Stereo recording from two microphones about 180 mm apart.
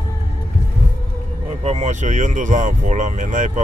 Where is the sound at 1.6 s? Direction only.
40° right (ahead or behind).